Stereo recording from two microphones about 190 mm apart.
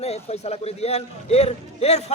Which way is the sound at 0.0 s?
35° left (ahead or behind).